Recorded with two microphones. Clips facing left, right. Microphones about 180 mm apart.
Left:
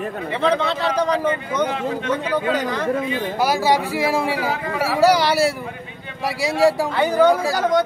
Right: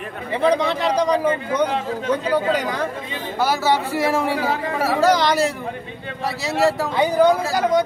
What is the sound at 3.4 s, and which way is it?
A man's voice, 10° left (ahead or behind).